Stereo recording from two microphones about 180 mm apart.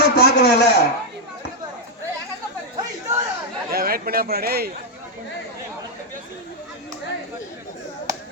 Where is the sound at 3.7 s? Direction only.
55° right (ahead or behind).